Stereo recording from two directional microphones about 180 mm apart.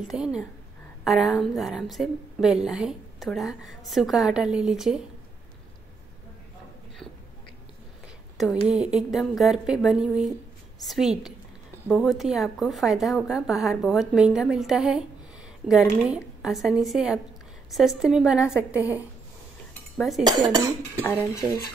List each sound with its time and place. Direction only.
0.1 s a woman's voice: 5° right (ahead or behind)
8.6 s a woman's voice: 5° right (ahead or behind)
20.2 s speech: 20° right (ahead or behind)
21.0 s speech: 15° left (ahead or behind)